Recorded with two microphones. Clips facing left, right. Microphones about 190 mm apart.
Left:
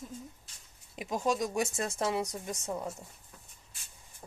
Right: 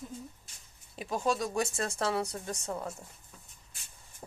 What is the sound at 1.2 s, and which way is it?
Speech, 15° left (ahead or behind).